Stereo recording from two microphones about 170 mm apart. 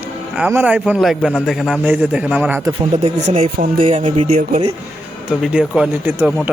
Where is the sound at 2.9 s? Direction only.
40° right (ahead or behind).